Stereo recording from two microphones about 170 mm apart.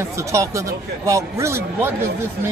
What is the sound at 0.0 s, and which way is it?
A man's voice, 20° right (ahead or behind).